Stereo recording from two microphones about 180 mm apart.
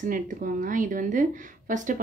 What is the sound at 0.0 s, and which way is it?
A woman's voice, 50° right (ahead or behind).